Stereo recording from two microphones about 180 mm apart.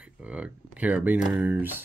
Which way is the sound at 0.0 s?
5° right (ahead or behind).